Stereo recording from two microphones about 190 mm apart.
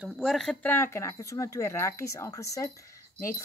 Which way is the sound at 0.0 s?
Centre (ahead or behind).